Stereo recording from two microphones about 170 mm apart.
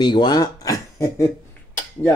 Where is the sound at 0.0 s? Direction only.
25° left (ahead or behind).